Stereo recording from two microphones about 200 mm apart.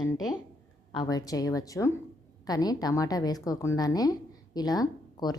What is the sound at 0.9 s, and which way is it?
A woman's voice, 20° left (ahead or behind).